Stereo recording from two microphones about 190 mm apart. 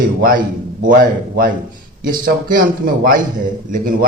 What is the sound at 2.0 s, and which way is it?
A man's voice, 45° right (ahead or behind).